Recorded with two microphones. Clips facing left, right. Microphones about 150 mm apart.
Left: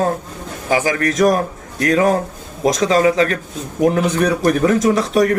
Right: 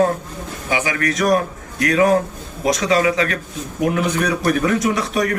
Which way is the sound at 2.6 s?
40° left (ahead or behind).